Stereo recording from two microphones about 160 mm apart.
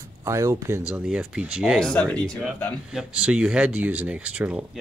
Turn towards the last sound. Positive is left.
turn(degrees=-5)  # may be behind; listen again after turning